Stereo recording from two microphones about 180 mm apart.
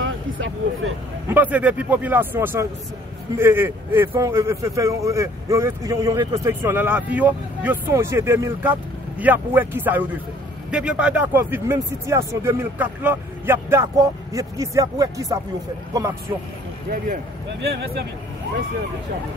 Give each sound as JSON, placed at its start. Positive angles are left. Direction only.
{"t": 0.0, "sound": "a sound", "side_deg": -90}
{"t": 1.3, "sound": "speech", "side_deg": -10}
{"t": 17.6, "sound": "speech", "side_deg": -60}